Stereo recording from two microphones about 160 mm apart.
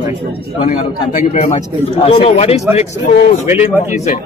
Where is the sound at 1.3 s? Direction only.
40° left (ahead or behind).